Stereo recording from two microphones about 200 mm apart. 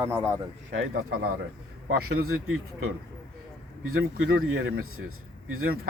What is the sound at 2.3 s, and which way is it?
Speech, 90° right.